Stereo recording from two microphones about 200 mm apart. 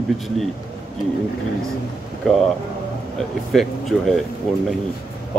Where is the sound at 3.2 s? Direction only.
Centre (ahead or behind).